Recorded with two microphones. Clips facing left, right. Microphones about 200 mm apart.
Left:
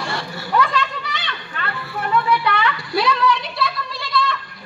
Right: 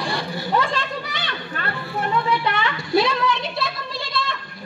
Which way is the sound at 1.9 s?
25° right (ahead or behind).